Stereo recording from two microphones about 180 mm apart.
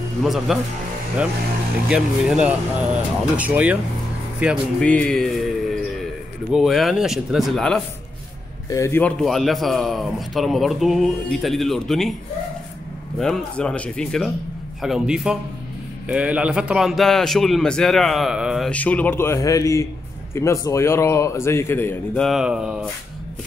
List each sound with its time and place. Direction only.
0.2 s a man's voice: centre (ahead or behind)
1.9 s speech: 5° right (ahead or behind)
4.7 s a man's voice: 5° left (ahead or behind)
6.5 s a man's voice: centre (ahead or behind)
8.6 s a man's voice: 15° left (ahead or behind)
9.2 s a man's voice: centre (ahead or behind)
13.2 s a man's voice: 5° left (ahead or behind)